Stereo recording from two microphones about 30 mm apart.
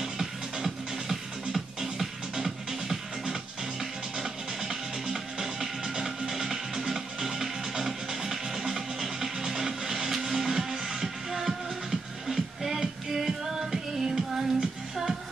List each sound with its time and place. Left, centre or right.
0.0 s music: centre